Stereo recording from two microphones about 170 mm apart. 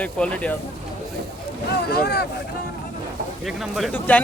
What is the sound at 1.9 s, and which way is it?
Speech, 65° left (ahead or behind).